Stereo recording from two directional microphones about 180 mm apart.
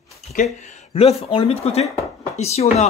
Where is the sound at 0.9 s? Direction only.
35° left (ahead or behind).